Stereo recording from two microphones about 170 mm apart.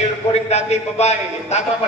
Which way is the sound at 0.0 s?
40° left (ahead or behind).